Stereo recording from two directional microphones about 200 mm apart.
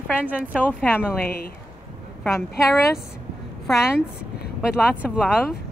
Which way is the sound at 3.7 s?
Centre (ahead or behind).